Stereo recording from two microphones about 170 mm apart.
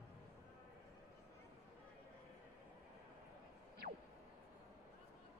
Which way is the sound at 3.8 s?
70° right (ahead or behind).